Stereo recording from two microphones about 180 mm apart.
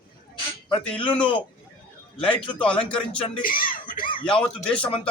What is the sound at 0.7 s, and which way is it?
Speech, 30° left (ahead or behind).